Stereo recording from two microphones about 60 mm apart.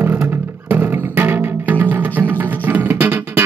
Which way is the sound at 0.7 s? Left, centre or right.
Right.